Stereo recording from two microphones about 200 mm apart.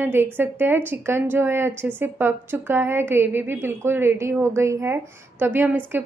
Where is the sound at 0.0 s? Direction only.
10° right (ahead or behind).